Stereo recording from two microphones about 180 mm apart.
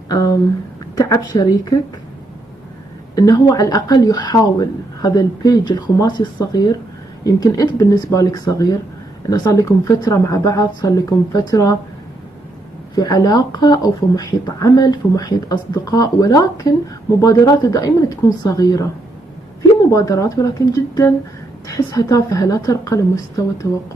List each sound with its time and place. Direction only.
0.9 s speech: 20° left (ahead or behind)
3.2 s speech: 20° left (ahead or behind)
12.9 s speech: 20° left (ahead or behind)
19.9 s speech: 20° left (ahead or behind)